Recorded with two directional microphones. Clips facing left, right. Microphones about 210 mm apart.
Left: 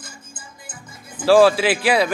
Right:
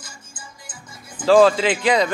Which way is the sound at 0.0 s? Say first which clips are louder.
Left 1 dB; 55° left (ahead or behind).